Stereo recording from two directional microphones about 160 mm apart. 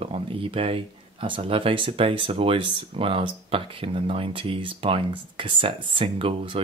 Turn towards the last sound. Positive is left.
turn(degrees=-35)  # may be behind; listen again after turning